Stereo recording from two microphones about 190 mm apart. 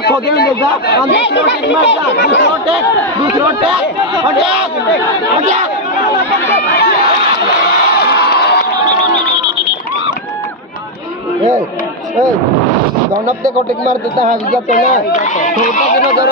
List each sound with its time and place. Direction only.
0.0 s speech: 55° left (ahead or behind)
8.1 s crowd: 65° left (ahead or behind)
13.4 s speech: 45° right (ahead or behind)
14.7 s speech: 40° left (ahead or behind)